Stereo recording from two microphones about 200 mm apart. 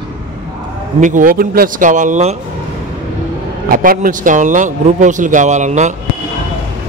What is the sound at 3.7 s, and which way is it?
Speech, 45° right (ahead or behind).